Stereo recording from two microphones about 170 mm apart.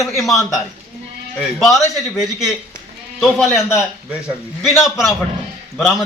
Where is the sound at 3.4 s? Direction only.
15° left (ahead or behind).